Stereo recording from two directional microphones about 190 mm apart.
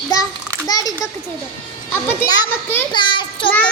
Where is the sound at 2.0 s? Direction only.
15° left (ahead or behind).